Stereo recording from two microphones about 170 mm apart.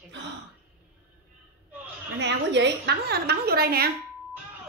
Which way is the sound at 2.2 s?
90° right.